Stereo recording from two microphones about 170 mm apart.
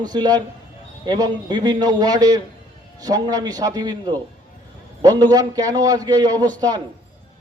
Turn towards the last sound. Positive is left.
turn(degrees=-25)  # may be behind; listen again after turning